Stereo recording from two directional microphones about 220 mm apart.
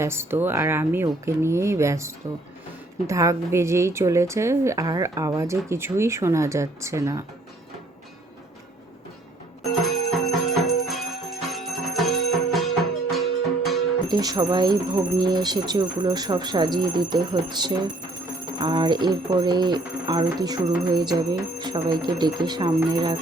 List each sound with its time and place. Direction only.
0.0 s a woman's voice: 10° right (ahead or behind)
9.6 s music: centre (ahead or behind)
14.1 s speech: 20° right (ahead or behind)